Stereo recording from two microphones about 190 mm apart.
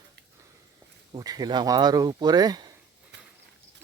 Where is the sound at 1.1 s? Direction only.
20° right (ahead or behind).